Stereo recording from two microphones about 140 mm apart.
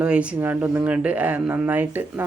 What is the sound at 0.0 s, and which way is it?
Speech, 10° right (ahead or behind).